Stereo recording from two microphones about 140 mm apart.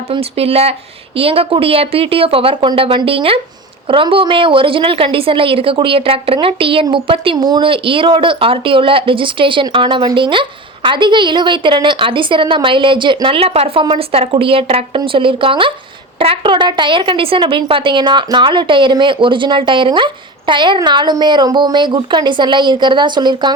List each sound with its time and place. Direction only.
0.1 s a woman's voice: 45° right (ahead or behind)
7.3 s a woman's voice: 30° right (ahead or behind)